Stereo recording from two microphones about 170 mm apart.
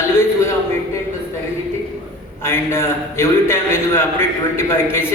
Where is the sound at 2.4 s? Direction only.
15° left (ahead or behind).